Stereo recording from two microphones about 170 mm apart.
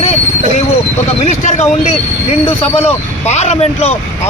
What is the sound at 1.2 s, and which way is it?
Speech, 40° left (ahead or behind).